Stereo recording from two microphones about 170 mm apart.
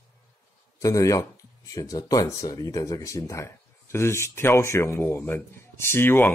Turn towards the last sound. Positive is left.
turn(degrees=15)  # may be behind; listen again after turning